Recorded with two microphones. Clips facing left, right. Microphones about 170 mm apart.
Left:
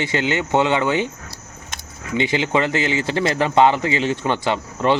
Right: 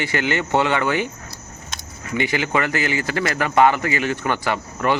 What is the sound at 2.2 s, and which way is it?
A man's voice, 20° left (ahead or behind).